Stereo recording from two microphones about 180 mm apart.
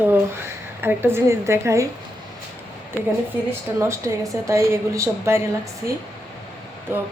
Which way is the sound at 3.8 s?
15° right (ahead or behind).